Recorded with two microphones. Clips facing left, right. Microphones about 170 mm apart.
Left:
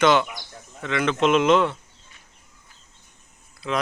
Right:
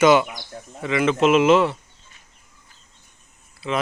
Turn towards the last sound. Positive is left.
turn(degrees=-5)  # may be behind; listen again after turning